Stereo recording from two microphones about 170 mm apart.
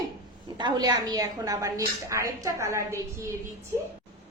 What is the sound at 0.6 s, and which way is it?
A woman's voice, 25° right (ahead or behind).